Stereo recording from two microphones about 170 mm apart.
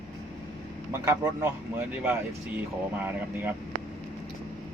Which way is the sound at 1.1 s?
15° right (ahead or behind).